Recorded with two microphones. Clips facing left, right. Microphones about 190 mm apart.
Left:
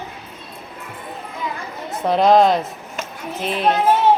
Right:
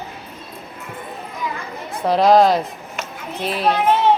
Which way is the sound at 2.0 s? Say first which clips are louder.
Even; centre (ahead or behind).